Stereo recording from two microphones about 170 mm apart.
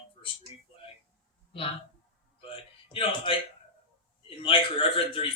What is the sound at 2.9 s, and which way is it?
Speech, 30° left (ahead or behind).